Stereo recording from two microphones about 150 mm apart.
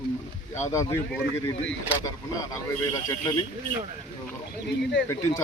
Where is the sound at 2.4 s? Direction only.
25° left (ahead or behind).